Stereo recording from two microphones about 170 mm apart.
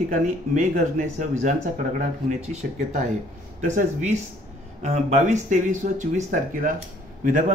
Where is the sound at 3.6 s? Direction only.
45° right (ahead or behind).